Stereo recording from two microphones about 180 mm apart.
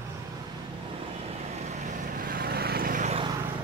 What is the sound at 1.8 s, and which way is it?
Vehicle, 50° right (ahead or behind).